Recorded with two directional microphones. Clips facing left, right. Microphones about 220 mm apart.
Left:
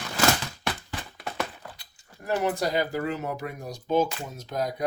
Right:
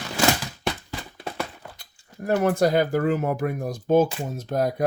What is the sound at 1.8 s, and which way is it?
Speech, 50° right (ahead or behind).